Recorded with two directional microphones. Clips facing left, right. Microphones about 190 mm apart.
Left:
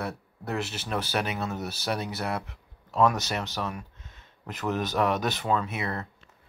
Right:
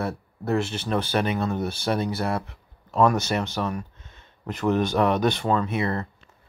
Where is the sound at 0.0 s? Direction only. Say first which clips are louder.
Right 5 dB; centre (ahead or behind).